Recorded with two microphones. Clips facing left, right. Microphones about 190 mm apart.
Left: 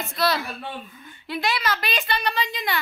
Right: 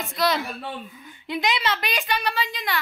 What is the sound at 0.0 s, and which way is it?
A woman's voice, 15° right (ahead or behind).